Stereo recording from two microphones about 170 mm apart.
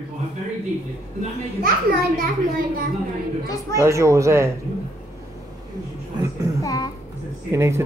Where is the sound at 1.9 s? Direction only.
60° right (ahead or behind).